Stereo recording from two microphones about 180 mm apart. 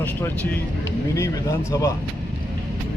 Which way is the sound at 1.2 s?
15° left (ahead or behind).